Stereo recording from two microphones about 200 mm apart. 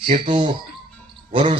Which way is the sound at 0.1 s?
25° right (ahead or behind).